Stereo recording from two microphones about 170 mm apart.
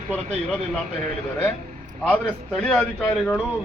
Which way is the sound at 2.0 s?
5° left (ahead or behind).